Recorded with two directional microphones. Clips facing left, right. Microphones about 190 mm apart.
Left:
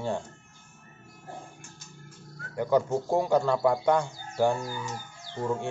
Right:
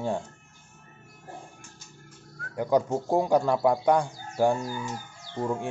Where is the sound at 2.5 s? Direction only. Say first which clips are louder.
Even; 15° right (ahead or behind).